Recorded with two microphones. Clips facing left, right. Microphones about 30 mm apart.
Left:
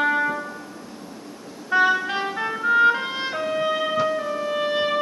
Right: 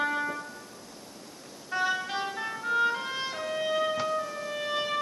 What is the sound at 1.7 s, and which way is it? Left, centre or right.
Music, left.